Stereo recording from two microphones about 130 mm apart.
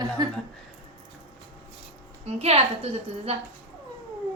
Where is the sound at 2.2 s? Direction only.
55° right (ahead or behind).